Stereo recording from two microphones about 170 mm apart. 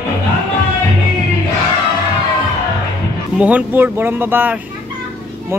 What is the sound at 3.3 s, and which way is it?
A man's voice, 10° right (ahead or behind).